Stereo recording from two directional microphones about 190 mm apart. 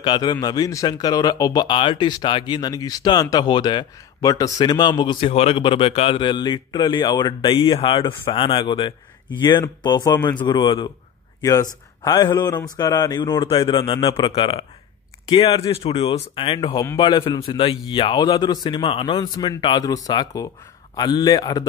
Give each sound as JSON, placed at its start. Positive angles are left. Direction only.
{"t": 0.0, "sound": "speech", "side_deg": 25}
{"t": 12.0, "sound": "speech", "side_deg": 15}